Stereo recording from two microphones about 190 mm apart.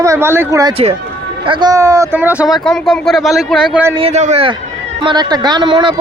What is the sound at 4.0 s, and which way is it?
Speech, 35° right (ahead or behind).